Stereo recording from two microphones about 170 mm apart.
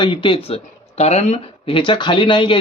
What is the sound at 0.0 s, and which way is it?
Speech, 30° left (ahead or behind).